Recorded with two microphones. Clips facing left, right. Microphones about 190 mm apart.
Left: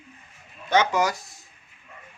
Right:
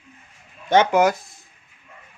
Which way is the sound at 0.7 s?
55° right (ahead or behind).